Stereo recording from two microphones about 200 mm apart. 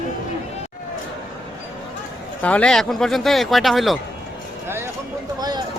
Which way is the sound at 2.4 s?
5° left (ahead or behind).